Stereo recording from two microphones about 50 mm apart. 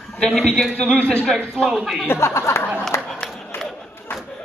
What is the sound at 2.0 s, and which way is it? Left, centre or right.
Speech, left.